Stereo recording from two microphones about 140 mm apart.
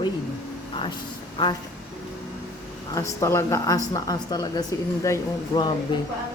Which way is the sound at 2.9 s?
20° left (ahead or behind).